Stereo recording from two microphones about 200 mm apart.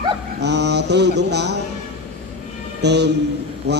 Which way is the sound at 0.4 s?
55° right (ahead or behind).